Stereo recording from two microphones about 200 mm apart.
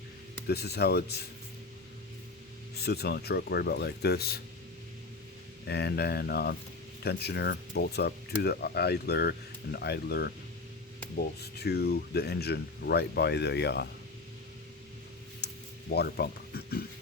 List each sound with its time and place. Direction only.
0.4 s speech: 55° left (ahead or behind)
2.7 s speech: 55° left (ahead or behind)
5.6 s speech: 55° left (ahead or behind)
11.6 s speech: 55° left (ahead or behind)
15.4 s a sound: 55° left (ahead or behind)
15.9 s speech: 55° left (ahead or behind)